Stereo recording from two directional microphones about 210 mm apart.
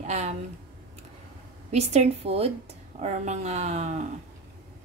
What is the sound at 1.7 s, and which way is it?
A woman's voice, 30° right (ahead or behind).